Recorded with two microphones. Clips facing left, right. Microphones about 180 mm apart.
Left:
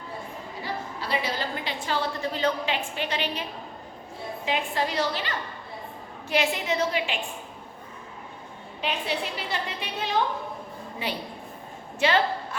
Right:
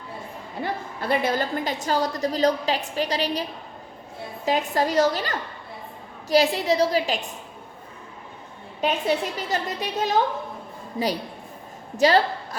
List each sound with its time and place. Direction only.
0.6 s a woman's voice: 50° right (ahead or behind)
4.4 s a woman's voice: 40° right (ahead or behind)
8.8 s a woman's voice: 45° right (ahead or behind)